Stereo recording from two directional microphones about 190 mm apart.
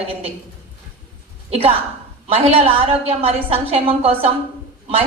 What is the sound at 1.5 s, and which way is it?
A woman's voice, 30° right (ahead or behind).